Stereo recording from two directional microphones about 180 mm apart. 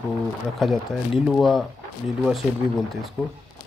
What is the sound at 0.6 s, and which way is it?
Speech, centre (ahead or behind).